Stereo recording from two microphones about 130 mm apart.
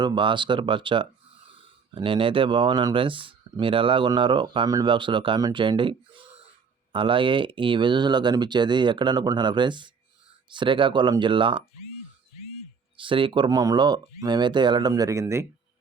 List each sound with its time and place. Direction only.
0.0 s speech: 40° right (ahead or behind)
13.0 s speech: 40° right (ahead or behind); by 15.4 s 20° right (ahead or behind)